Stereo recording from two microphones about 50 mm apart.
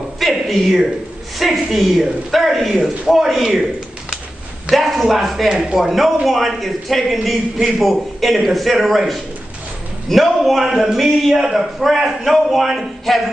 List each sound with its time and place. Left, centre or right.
0.2 s a sound: centre
1.4 s a man's voice: centre
4.6 s a man's voice: centre
5.5 s speech: centre
5.8 s a man's voice: centre